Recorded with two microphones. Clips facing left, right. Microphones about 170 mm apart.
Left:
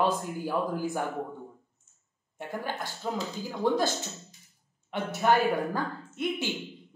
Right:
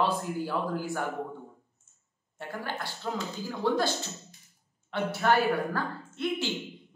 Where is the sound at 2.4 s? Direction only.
15° left (ahead or behind).